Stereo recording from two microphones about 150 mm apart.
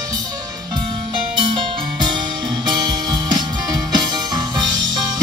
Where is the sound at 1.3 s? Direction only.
30° right (ahead or behind).